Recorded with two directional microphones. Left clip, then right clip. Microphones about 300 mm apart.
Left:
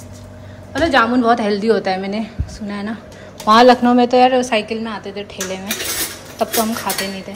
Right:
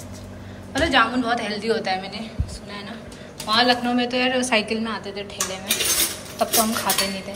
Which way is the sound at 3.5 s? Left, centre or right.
Centre.